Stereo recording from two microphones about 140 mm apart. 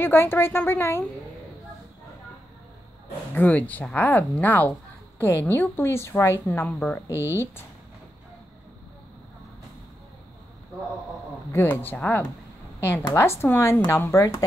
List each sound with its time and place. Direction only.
0.0 s speech: 15° left (ahead or behind)
3.3 s speech: 10° left (ahead or behind)
11.5 s a woman's voice: 15° left (ahead or behind)